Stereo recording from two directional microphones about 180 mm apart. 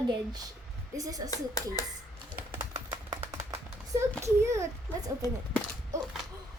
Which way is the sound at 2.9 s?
15° right (ahead or behind).